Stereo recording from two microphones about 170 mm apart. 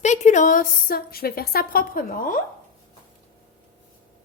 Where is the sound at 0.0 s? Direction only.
45° left (ahead or behind).